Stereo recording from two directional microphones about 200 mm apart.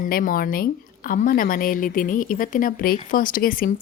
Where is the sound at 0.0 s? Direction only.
45° left (ahead or behind).